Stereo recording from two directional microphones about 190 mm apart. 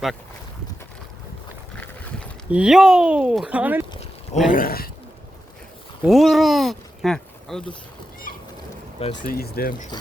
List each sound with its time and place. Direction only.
2.5 s speech: 5° right (ahead or behind)
4.4 s speech: 50° left (ahead or behind)
6.0 s speech: centre (ahead or behind)
9.2 s speech: 50° left (ahead or behind)